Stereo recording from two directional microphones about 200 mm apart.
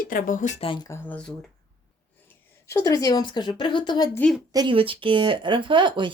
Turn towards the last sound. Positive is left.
turn(degrees=-25)  # may be behind; listen again after turning